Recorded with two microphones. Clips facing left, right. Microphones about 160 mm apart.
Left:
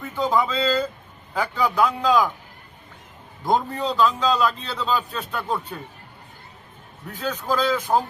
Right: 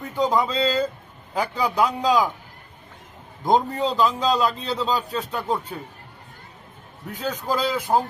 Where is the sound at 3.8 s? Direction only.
15° right (ahead or behind).